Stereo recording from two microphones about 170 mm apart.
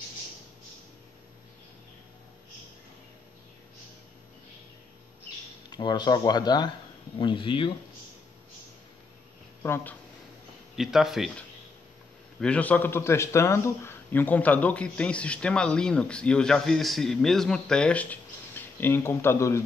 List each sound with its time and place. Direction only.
5.7 s speech: 25° left (ahead or behind)
9.6 s speech: 15° left (ahead or behind)
10.8 s a man's voice: centre (ahead or behind); by 19.6 s 15° left (ahead or behind)